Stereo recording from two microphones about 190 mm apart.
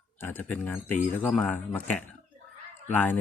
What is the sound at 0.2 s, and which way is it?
Speech, 10° left (ahead or behind).